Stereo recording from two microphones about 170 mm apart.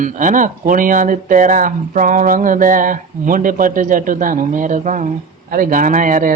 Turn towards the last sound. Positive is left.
turn(degrees=-50)  # may be behind; listen again after turning